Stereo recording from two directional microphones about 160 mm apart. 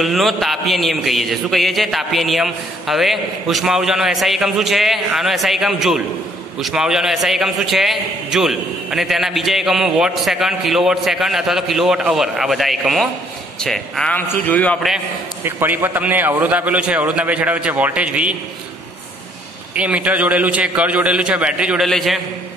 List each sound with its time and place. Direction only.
0.0 s a man's voice: centre (ahead or behind)
15.4 s a man's voice: 15° right (ahead or behind)
19.7 s a man's voice: 10° right (ahead or behind)